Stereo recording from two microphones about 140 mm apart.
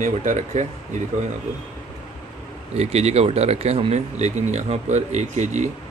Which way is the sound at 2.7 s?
50° right (ahead or behind).